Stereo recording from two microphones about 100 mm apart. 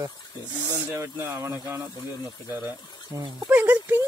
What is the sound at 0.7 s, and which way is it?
Speech, 25° right (ahead or behind).